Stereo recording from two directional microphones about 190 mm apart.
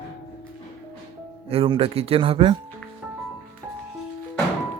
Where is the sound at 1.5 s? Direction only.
30° right (ahead or behind).